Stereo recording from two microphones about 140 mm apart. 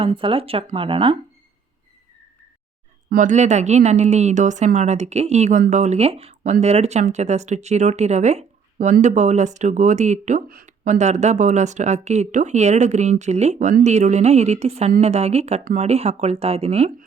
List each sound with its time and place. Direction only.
0.0 s speech: 40° right (ahead or behind)
3.1 s speech: 65° right (ahead or behind)
10.8 s speech: 55° right (ahead or behind)